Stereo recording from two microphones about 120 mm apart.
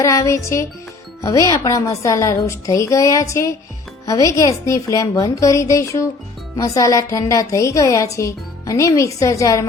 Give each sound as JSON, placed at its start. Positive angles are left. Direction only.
{"t": 0.0, "sound": "a woman's voice", "side_deg": 25}